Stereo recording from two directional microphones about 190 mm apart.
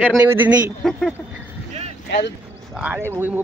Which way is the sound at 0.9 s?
Centre (ahead or behind).